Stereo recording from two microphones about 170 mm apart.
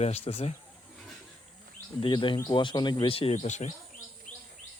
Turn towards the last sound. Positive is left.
turn(degrees=45)  # may be behind; listen again after turning